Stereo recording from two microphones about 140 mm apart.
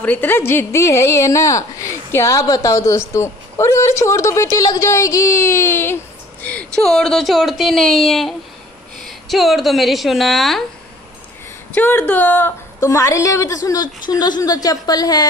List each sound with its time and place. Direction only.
0.0 s a woman's voice: 15° left (ahead or behind)
11.7 s a woman's voice: 10° left (ahead or behind); by 15.2 s 25° left (ahead or behind)